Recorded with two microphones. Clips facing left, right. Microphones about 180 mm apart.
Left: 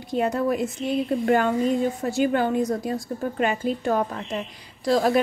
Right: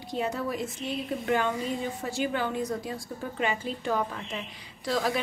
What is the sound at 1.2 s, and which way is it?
Speech, 45° left (ahead or behind).